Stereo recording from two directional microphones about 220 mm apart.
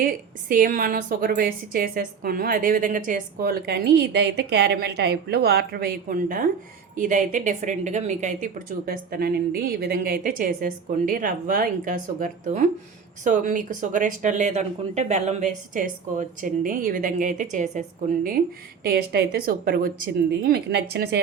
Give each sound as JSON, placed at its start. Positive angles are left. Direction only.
{"t": 0.0, "sound": "a woman's voice", "side_deg": -40}